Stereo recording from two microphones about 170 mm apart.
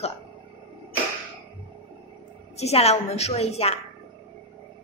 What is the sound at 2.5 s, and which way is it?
A woman's voice, 40° left (ahead or behind).